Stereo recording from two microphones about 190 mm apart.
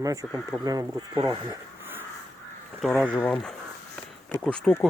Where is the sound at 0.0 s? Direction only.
15° right (ahead or behind).